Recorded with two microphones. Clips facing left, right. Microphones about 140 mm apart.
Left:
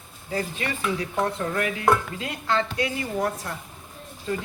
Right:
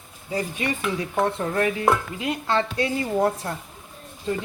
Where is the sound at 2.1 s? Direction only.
20° right (ahead or behind).